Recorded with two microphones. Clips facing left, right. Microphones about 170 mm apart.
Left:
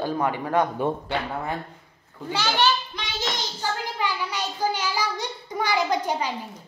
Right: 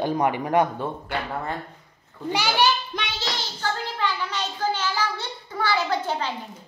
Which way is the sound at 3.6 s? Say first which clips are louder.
Right 2 dB; 10° left (ahead or behind).